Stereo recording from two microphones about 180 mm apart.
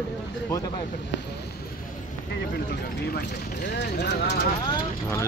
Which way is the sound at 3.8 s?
70° left (ahead or behind).